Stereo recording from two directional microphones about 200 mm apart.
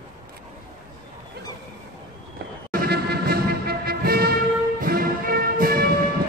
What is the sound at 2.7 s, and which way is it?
Music, 50° right (ahead or behind).